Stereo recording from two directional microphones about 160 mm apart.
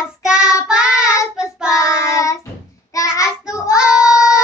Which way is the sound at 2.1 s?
20° left (ahead or behind).